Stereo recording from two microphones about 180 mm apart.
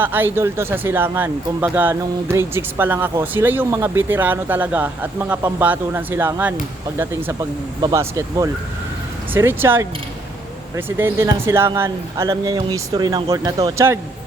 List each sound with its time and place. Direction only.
0.0 s speech: 10° right (ahead or behind)